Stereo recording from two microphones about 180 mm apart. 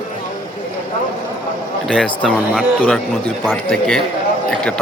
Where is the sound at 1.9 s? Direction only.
Centre (ahead or behind).